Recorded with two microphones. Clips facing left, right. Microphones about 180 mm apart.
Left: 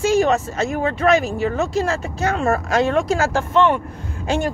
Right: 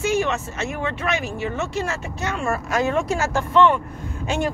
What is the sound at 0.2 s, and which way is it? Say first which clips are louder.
Speech: left 6 dB; 35° left (ahead or behind).